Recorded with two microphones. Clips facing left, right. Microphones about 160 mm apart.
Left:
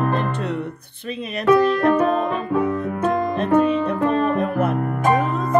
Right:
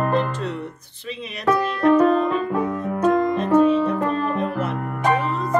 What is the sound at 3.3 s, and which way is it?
Music, 65° left (ahead or behind).